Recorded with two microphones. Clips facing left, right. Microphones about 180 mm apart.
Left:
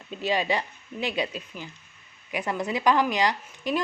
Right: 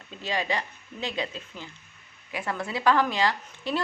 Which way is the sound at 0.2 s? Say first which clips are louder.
Left 3 dB; 15° left (ahead or behind).